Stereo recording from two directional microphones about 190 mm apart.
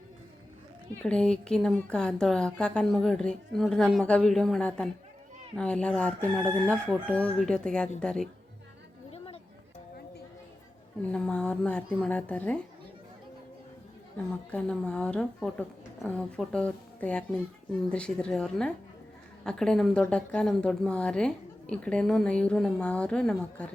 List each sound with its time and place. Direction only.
1.0 s a woman's voice: 5° left (ahead or behind)
9.1 s a sound: 30° left (ahead or behind)
11.1 s a woman's voice: 5° left (ahead or behind)
14.5 s a woman's voice: 5° left (ahead or behind)